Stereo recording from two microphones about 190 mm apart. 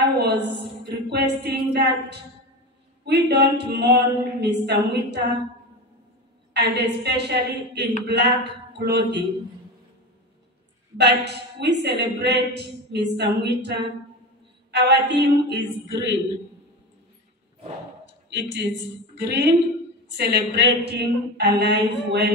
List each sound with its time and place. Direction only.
0.0 s a sound: 65° right (ahead or behind)
3.1 s a woman's voice: 60° right (ahead or behind)
6.5 s a woman's voice: 60° right (ahead or behind)
11.0 s a woman's voice: 65° right (ahead or behind)
18.3 s a woman's voice: 70° right (ahead or behind)